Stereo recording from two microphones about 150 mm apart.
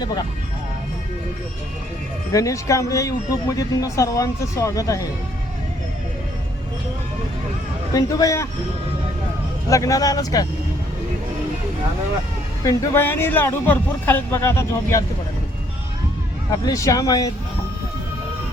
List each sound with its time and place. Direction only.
0.0 s speech: 30° left (ahead or behind)
2.3 s speech: 20° left (ahead or behind)
7.9 s speech: 20° left (ahead or behind)
9.6 s speech: 20° left (ahead or behind)
12.6 s speech: 20° left (ahead or behind)
16.6 s speech: 20° left (ahead or behind)